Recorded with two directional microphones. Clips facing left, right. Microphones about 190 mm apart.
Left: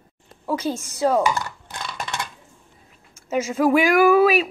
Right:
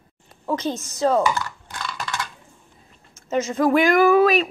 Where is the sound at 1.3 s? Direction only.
20° left (ahead or behind).